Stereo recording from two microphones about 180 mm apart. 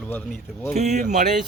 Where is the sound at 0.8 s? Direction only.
40° right (ahead or behind).